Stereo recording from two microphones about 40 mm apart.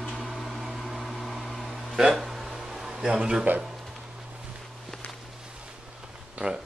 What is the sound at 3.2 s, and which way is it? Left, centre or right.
Speech, centre.